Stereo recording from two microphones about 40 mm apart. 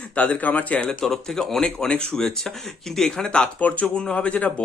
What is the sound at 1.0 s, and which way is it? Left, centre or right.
Speech, centre.